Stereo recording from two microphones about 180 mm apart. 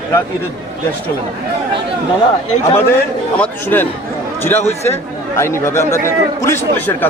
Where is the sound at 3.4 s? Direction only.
10° left (ahead or behind).